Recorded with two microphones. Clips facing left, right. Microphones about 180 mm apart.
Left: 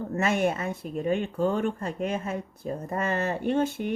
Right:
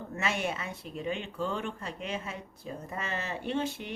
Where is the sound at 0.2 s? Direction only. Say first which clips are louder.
Left 7 dB; 50° left (ahead or behind).